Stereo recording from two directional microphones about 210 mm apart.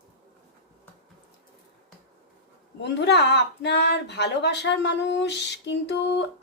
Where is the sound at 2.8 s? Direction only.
55° left (ahead or behind).